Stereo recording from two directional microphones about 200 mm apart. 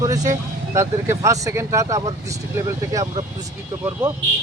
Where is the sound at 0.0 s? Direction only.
15° right (ahead or behind).